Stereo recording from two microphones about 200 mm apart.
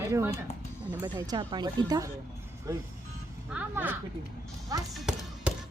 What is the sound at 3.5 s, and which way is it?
Speech, 10° right (ahead or behind).